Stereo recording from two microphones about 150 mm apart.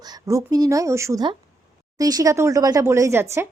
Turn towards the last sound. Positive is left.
turn(degrees=-15)  # may be behind; listen again after turning